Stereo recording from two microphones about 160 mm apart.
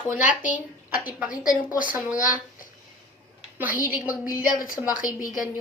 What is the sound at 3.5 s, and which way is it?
Speech, 10° right (ahead or behind).